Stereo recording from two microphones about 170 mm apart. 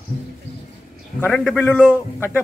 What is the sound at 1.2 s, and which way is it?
Speech, 5° left (ahead or behind).